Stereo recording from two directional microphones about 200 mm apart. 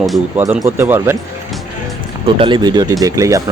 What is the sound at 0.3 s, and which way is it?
Speech, 10° right (ahead or behind).